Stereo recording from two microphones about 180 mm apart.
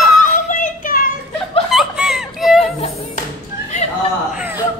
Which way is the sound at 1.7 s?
Centre (ahead or behind).